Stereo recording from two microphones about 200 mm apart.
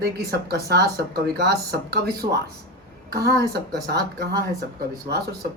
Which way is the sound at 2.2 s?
30° right (ahead or behind).